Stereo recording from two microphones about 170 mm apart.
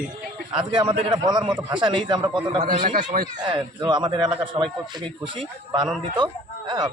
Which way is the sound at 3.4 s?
25° right (ahead or behind).